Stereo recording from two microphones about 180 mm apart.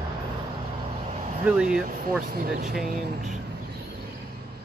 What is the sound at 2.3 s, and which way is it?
Speech, 55° right (ahead or behind).